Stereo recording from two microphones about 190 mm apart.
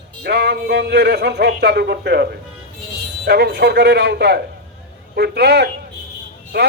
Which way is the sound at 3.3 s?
60° right (ahead or behind).